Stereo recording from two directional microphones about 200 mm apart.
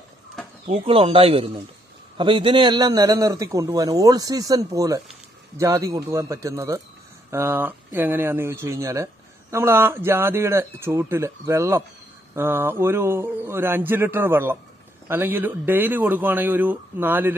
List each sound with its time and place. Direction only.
0.7 s speech: 30° right (ahead or behind); by 17.3 s 10° right (ahead or behind)